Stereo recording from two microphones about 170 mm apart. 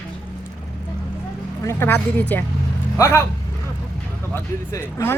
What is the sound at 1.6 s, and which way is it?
Speech, 15° left (ahead or behind).